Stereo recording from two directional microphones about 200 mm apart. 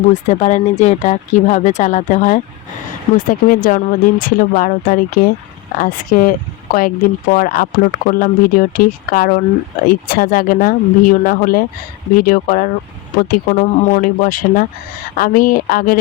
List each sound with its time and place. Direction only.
0.1 s speech: 35° left (ahead or behind)